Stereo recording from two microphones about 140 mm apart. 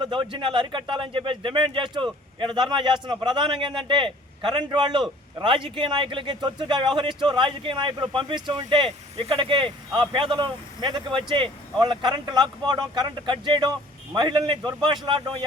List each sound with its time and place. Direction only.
0.0 s speech: 35° right (ahead or behind)